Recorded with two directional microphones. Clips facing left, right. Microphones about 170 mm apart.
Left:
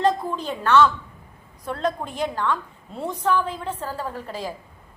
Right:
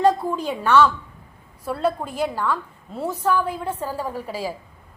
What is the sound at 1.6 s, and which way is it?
A woman's voice, 5° right (ahead or behind).